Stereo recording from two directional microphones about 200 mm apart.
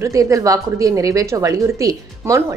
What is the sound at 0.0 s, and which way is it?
A woman's voice, 15° right (ahead or behind).